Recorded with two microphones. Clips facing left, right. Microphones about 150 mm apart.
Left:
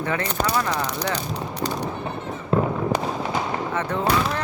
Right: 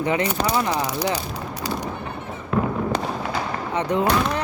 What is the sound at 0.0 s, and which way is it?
Speech, 15° right (ahead or behind).